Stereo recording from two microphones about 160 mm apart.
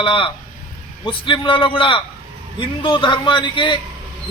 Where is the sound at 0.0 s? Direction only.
30° left (ahead or behind).